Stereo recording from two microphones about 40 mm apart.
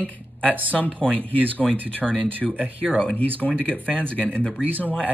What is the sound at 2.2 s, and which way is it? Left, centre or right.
Speech, right.